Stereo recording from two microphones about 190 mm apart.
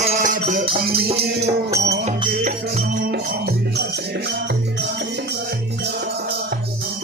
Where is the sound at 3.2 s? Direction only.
55° right (ahead or behind).